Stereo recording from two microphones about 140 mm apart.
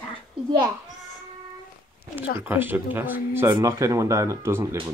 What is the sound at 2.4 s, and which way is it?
Speech, 15° right (ahead or behind).